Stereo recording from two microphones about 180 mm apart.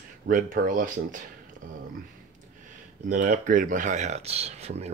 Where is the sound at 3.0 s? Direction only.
45° right (ahead or behind).